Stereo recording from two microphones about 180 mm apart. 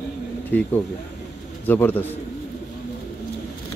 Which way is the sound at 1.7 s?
10° left (ahead or behind).